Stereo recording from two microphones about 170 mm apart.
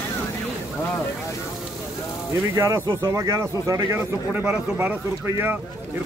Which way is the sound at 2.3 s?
15° right (ahead or behind).